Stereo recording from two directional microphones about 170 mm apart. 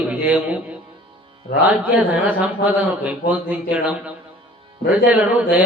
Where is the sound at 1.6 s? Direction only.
10° right (ahead or behind).